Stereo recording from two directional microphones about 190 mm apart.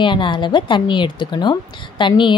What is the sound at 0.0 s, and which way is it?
A woman's voice, 25° left (ahead or behind).